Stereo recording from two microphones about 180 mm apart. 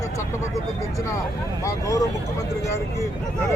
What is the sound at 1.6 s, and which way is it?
Speech, 20° left (ahead or behind).